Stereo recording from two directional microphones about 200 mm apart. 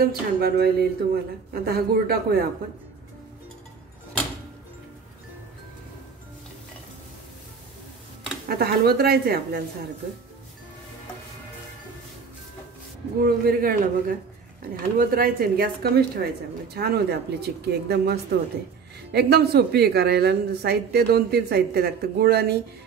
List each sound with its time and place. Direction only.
0.0 s speech: 50° right (ahead or behind)
8.5 s speech: 50° right (ahead or behind)
13.2 s speech: 45° right (ahead or behind)
19.1 s speech: 55° right (ahead or behind)